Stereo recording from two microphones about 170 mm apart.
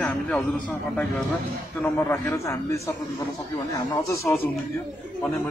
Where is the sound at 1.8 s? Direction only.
15° left (ahead or behind).